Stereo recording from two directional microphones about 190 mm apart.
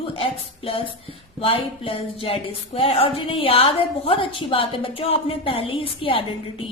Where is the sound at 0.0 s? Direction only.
30° left (ahead or behind).